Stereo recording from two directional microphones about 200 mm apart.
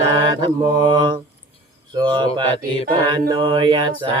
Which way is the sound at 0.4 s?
20° right (ahead or behind).